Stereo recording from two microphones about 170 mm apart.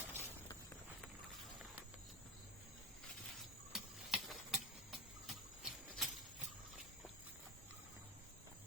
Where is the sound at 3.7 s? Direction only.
Centre (ahead or behind).